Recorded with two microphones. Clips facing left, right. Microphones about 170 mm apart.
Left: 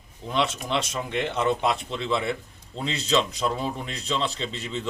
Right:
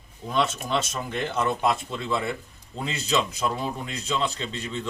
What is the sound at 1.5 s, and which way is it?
Speech, 25° left (ahead or behind).